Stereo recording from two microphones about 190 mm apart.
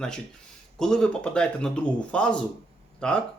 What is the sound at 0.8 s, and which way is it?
Speech, centre (ahead or behind).